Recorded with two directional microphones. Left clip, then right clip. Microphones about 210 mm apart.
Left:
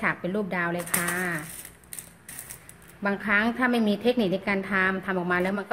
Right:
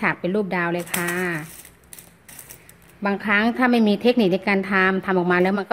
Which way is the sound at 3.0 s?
35° right (ahead or behind).